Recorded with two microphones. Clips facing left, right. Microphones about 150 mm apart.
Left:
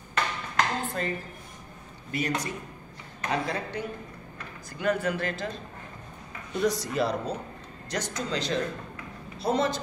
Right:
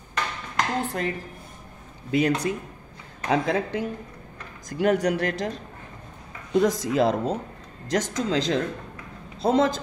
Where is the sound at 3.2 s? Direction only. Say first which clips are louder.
Right 6 dB; 90° right.